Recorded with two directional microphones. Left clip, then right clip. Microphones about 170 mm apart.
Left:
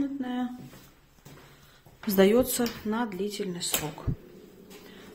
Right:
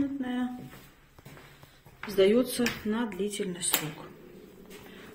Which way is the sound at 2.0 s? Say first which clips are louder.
Left 2 dB; 55° left (ahead or behind).